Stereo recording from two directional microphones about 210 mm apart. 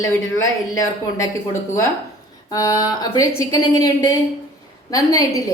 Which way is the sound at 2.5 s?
15° left (ahead or behind).